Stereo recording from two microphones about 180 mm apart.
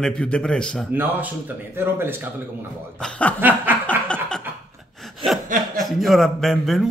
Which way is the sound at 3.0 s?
10° left (ahead or behind).